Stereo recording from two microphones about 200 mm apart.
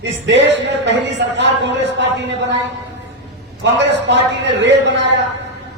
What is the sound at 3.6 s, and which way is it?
A man's voice, 60° right (ahead or behind).